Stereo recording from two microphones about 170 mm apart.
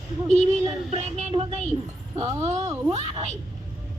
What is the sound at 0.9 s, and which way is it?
Music, 40° right (ahead or behind).